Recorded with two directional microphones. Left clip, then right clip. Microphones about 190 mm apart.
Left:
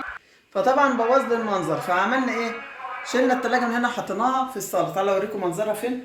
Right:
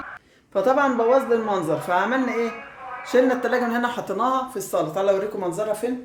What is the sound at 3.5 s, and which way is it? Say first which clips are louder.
Speech: even; 50° right (ahead or behind).